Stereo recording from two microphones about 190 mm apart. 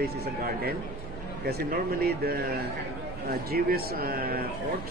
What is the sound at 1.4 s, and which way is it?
A man's voice, 55° right (ahead or behind).